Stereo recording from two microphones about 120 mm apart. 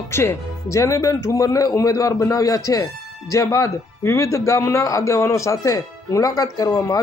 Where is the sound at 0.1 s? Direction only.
20° left (ahead or behind).